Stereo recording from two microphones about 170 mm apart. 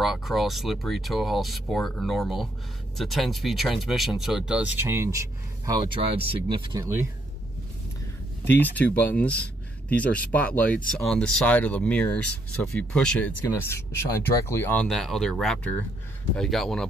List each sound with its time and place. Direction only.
0.0 s speech: centre (ahead or behind)
5.7 s speech: 25° right (ahead or behind)
8.5 s speech: 10° left (ahead or behind)